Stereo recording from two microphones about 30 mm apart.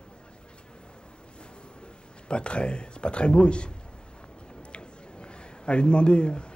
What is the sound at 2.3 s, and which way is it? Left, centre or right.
A man's voice, left.